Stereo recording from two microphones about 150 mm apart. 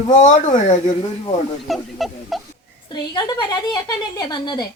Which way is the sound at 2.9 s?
30° left (ahead or behind).